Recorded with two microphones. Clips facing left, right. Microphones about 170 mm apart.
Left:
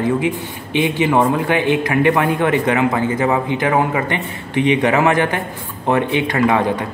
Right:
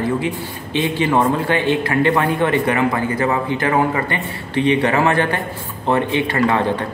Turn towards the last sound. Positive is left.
turn(degrees=15)  # may be behind; listen again after turning